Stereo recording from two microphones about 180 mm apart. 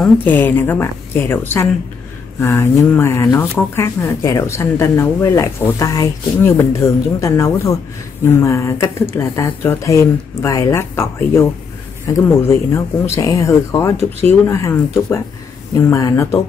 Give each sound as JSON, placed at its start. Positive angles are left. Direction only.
{"t": 0.0, "sound": "speech", "side_deg": 10}